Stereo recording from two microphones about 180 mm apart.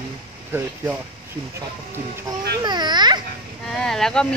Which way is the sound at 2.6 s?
25° right (ahead or behind).